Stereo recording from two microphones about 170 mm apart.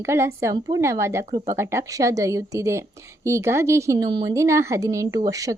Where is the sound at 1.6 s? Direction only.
15° right (ahead or behind).